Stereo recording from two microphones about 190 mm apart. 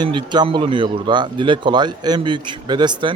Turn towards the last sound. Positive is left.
turn(degrees=-25)  # may be behind; listen again after turning